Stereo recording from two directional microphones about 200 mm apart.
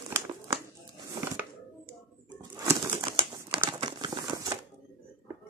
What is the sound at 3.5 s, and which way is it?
Crumpling, 25° right (ahead or behind).